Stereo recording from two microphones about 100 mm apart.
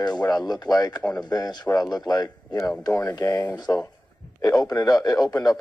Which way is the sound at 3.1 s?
40° left (ahead or behind).